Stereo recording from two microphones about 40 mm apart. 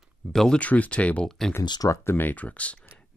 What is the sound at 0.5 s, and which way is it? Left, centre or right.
Speech, left.